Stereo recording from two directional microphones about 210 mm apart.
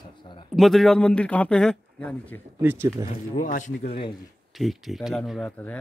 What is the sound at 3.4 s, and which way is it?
Speech, 40° left (ahead or behind).